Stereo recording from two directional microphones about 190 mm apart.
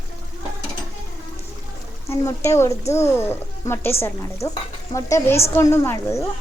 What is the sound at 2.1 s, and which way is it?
Speech, 15° left (ahead or behind).